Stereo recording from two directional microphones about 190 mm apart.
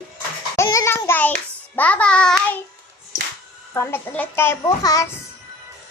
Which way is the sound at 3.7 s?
15° left (ahead or behind).